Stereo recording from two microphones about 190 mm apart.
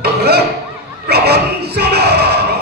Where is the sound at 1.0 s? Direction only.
60° right (ahead or behind).